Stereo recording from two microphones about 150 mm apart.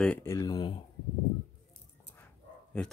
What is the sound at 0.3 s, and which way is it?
Speech, 25° left (ahead or behind).